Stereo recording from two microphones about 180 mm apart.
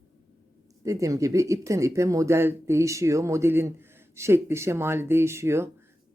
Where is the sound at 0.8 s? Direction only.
15° right (ahead or behind).